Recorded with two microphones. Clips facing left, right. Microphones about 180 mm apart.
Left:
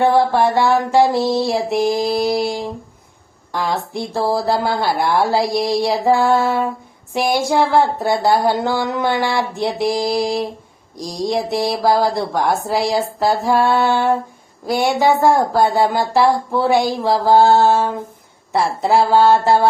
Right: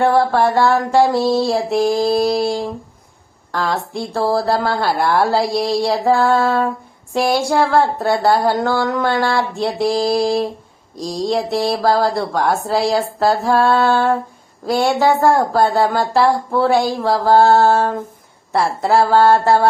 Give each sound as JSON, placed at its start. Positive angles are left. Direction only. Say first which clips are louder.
{"t": 0.0, "sound": "music", "louder": "even", "side_deg": 20}
{"t": 3.5, "sound": "speech", "louder": "even", "side_deg": 15}
{"t": 18.5, "sound": "music", "louder": "even", "side_deg": 20}